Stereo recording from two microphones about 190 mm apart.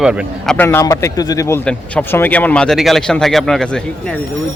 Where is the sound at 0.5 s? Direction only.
15° left (ahead or behind).